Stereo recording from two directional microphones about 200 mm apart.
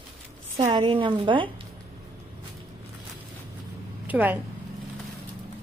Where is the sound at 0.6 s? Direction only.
25° right (ahead or behind).